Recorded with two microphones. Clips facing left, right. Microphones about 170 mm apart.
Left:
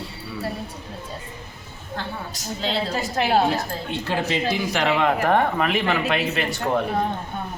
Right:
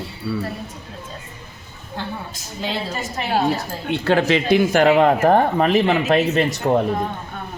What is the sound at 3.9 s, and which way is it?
Speech, 70° right (ahead or behind).